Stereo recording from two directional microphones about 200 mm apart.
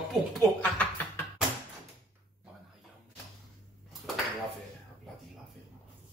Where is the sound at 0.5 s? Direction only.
10° left (ahead or behind).